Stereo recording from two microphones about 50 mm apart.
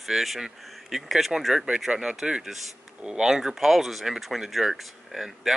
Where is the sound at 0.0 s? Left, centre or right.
Centre.